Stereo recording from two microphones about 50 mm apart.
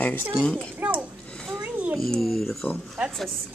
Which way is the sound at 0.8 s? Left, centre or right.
Right.